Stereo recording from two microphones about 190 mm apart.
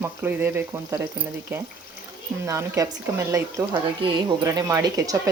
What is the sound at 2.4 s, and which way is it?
Speech, 15° right (ahead or behind).